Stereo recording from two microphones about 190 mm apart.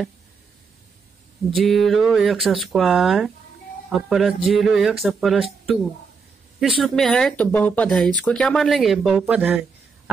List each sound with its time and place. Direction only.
1.5 s speech: centre (ahead or behind)
6.6 s speech: centre (ahead or behind)